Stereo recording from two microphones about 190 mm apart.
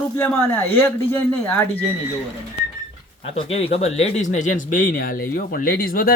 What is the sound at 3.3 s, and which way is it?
Speech, 30° left (ahead or behind).